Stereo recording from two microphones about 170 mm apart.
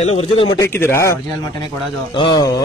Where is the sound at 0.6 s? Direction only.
15° left (ahead or behind).